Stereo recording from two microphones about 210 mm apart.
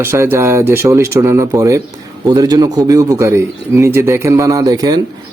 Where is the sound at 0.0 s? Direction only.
10° right (ahead or behind).